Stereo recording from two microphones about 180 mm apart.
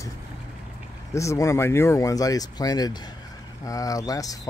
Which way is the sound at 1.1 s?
15° left (ahead or behind).